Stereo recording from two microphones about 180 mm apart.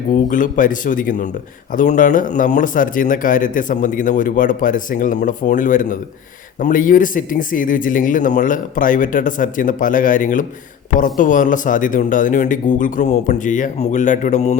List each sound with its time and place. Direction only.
0.1 s a man's voice: 45° left (ahead or behind)